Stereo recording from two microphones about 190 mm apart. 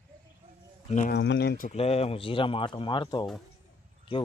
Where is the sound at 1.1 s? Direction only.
65° left (ahead or behind).